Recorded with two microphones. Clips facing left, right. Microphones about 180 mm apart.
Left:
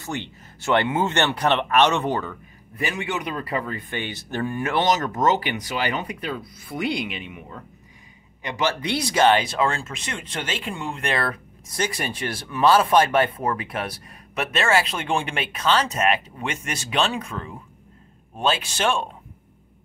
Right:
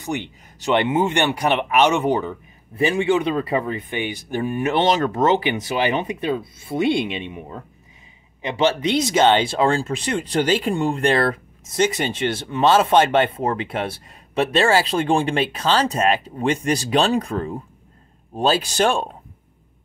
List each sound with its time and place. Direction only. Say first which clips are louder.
0.0 s speech: right 4 dB; 15° right (ahead or behind)
2.7 s speech: right 9 dB; 30° right (ahead or behind)